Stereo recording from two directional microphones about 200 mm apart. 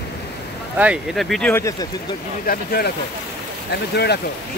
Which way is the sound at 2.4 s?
50° left (ahead or behind).